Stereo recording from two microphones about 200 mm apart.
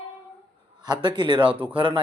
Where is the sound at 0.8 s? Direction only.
25° right (ahead or behind).